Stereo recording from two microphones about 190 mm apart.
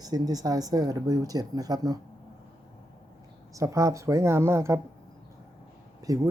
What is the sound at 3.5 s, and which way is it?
Speech, 15° right (ahead or behind).